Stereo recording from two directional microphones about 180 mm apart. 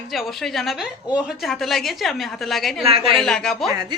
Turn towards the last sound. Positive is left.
turn(degrees=0)  # may be behind; listen again after turning